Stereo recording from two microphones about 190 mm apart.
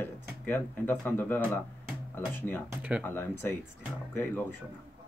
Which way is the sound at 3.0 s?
10° left (ahead or behind).